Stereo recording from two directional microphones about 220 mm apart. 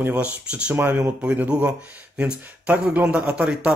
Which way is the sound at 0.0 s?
5° right (ahead or behind).